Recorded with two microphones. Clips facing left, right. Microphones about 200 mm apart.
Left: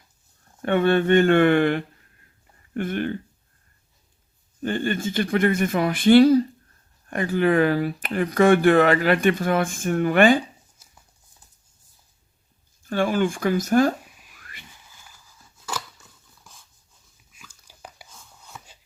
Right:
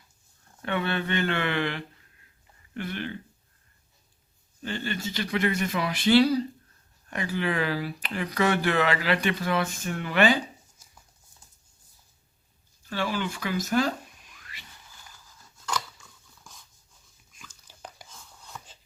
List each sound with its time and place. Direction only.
0.6 s speech: 50° left (ahead or behind)
4.6 s speech: 50° left (ahead or behind)
12.8 s speech: 50° left (ahead or behind)
14.1 s a sound: 5° left (ahead or behind)
14.3 s a sound: 50° left (ahead or behind)
17.3 s dog: 10° left (ahead or behind)